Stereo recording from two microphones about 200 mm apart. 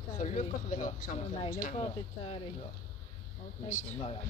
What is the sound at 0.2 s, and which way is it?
Speech, 40° left (ahead or behind).